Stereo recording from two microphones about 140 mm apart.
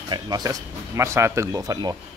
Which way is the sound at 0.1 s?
30° right (ahead or behind).